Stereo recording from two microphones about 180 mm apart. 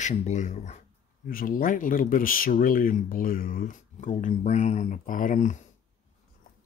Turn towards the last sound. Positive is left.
turn(degrees=45)  # may be behind; listen again after turning